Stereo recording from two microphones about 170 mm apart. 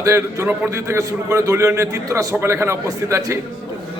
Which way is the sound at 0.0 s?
15° right (ahead or behind).